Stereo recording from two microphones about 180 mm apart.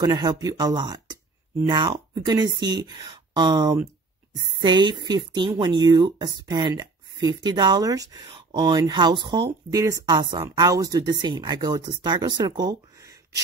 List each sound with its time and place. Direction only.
0.0 s speech: 25° right (ahead or behind)